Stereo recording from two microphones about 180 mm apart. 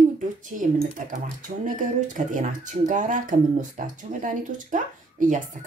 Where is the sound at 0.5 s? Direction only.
40° right (ahead or behind).